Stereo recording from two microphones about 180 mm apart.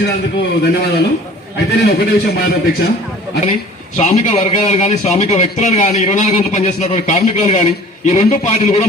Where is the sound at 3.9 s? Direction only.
40° left (ahead or behind).